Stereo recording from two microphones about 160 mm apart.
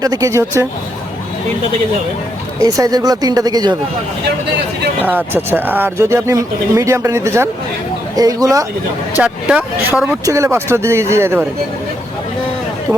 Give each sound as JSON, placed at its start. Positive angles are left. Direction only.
{"t": 0.0, "sound": "speech", "side_deg": -20}
{"t": 2.6, "sound": "speech", "side_deg": -20}
{"t": 5.0, "sound": "speech", "side_deg": -10}
{"t": 9.1, "sound": "speech", "side_deg": -10}
{"t": 10.2, "sound": "speech", "side_deg": -20}
{"t": 12.9, "sound": "speech", "side_deg": -5}